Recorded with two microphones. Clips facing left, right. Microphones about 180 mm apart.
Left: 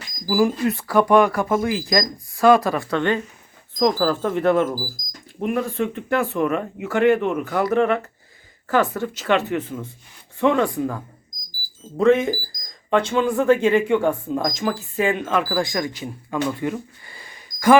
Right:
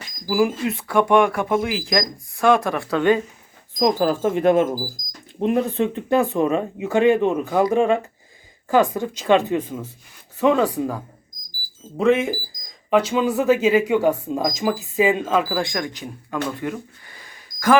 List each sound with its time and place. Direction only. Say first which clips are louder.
0.3 s speech: left 1 dB; centre (ahead or behind)
3.8 s speech: right 1 dB; 20° right (ahead or behind)
15.5 s speech: left 1 dB; centre (ahead or behind)